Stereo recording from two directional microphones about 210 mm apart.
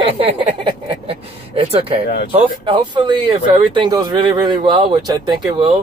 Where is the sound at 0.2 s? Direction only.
25° right (ahead or behind).